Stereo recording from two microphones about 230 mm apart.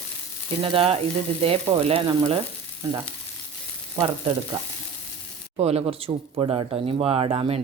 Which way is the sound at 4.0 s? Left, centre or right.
Centre.